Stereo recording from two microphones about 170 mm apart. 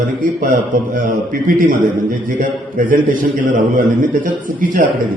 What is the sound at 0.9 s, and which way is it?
A man's voice, 55° right (ahead or behind).